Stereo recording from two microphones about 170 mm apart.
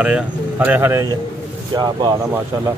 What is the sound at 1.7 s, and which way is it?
Speech, 25° right (ahead or behind).